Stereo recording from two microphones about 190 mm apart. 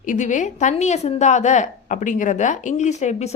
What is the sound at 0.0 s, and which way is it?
Speech, 40° left (ahead or behind).